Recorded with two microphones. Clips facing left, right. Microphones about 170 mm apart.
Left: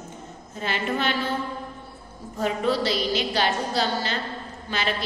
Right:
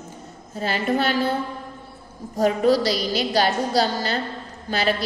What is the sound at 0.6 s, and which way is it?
Speech, 40° right (ahead or behind).